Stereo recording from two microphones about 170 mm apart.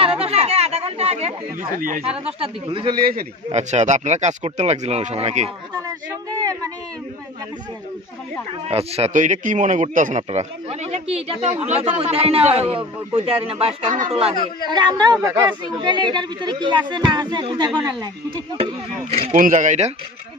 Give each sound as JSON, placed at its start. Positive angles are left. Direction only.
{"t": 0.2, "sound": "chatter", "side_deg": -40}
{"t": 1.8, "sound": "speech", "side_deg": -55}
{"t": 2.0, "sound": "a man's voice", "side_deg": -35}
{"t": 3.0, "sound": "a man's voice", "side_deg": -60}
{"t": 3.5, "sound": "speech", "side_deg": -40}
{"t": 8.6, "sound": "a man's voice", "side_deg": -35}
{"t": 13.9, "sound": "speech", "side_deg": -50}
{"t": 14.7, "sound": "speech", "side_deg": -25}
{"t": 18.6, "sound": "a man's voice", "side_deg": -40}